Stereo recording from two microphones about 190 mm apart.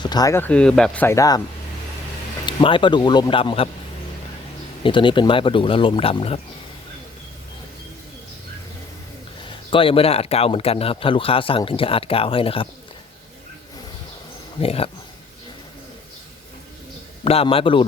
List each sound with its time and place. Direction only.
0.0 s speech: 20° left (ahead or behind)
2.5 s speech: 25° left (ahead or behind)
4.8 s speech: 25° left (ahead or behind)
9.6 s speech: 25° left (ahead or behind)
14.6 s speech: 30° left (ahead or behind)
17.2 s speech: 30° left (ahead or behind)